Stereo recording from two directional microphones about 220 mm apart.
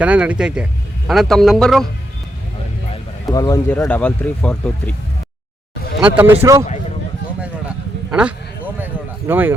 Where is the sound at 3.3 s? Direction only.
15° left (ahead or behind).